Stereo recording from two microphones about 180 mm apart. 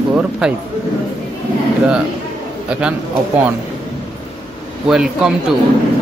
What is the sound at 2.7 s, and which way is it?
Speech, 5° right (ahead or behind).